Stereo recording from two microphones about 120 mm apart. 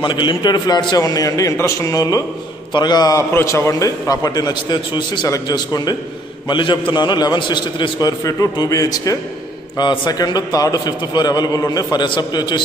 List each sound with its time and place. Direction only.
0.0 s a man's voice: 45° left (ahead or behind)